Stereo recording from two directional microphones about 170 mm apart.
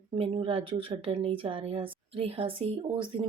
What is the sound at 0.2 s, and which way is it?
A woman's voice, 30° right (ahead or behind).